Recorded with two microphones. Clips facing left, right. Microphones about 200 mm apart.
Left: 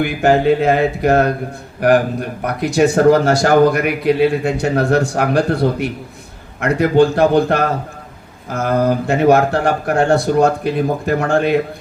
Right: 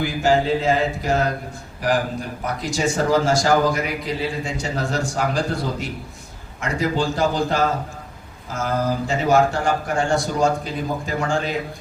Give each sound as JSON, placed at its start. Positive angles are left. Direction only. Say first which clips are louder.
{"t": 0.0, "sound": "speech", "louder": "left 5 dB", "side_deg": 60}